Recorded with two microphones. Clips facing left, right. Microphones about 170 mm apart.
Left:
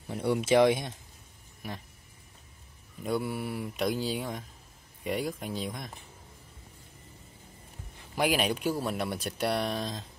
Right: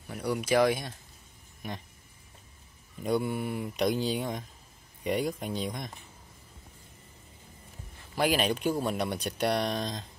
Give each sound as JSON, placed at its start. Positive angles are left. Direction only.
{"t": 0.1, "sound": "speech", "side_deg": 25}
{"t": 1.6, "sound": "speech", "side_deg": 5}
{"t": 3.0, "sound": "speech", "side_deg": 0}
{"t": 8.2, "sound": "speech", "side_deg": 10}